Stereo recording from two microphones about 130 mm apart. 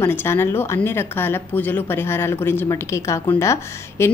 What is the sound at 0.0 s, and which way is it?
Speech, 20° left (ahead or behind).